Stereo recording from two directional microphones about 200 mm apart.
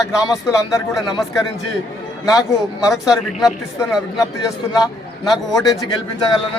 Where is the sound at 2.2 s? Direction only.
15° left (ahead or behind).